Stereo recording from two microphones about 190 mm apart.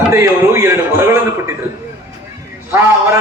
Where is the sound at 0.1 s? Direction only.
15° right (ahead or behind).